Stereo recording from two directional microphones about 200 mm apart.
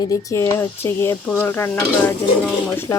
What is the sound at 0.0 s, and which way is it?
Speech, 15° left (ahead or behind).